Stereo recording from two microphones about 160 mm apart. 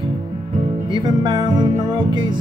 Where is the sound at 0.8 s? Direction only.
30° right (ahead or behind).